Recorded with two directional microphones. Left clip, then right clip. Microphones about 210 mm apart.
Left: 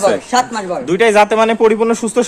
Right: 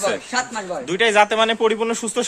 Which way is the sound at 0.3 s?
20° left (ahead or behind).